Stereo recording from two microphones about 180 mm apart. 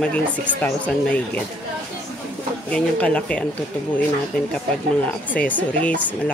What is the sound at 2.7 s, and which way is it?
Speech, 5° left (ahead or behind).